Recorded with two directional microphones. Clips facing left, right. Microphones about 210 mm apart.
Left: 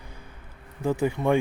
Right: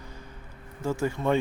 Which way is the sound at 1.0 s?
15° left (ahead or behind).